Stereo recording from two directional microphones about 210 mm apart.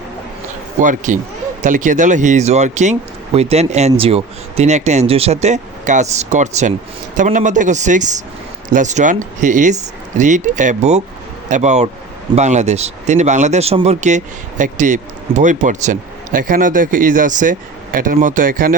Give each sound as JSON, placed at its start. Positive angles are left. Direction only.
{"t": 0.8, "sound": "a man's voice", "side_deg": -35}